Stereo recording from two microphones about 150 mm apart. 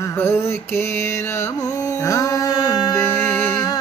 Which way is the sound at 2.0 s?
25° left (ahead or behind).